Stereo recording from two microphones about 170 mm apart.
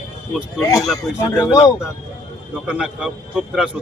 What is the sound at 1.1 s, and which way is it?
Speech, 5° right (ahead or behind).